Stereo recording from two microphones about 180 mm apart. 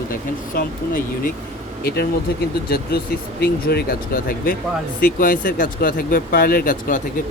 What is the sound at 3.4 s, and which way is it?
Speech, 60° left (ahead or behind).